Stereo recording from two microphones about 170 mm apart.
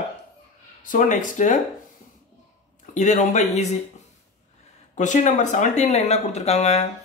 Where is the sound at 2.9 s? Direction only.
45° left (ahead or behind).